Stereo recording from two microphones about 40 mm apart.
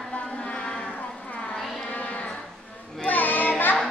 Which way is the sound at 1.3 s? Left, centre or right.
Left.